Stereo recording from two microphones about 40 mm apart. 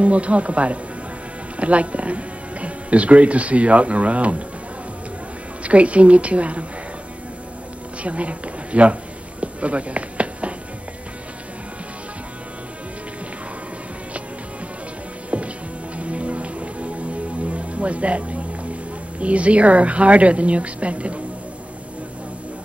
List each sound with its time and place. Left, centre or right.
0.0 s speech: right
5.6 s speech: right
8.0 s speech: right
9.4 s a sound: right
15.3 s music: right
19.1 s speech: right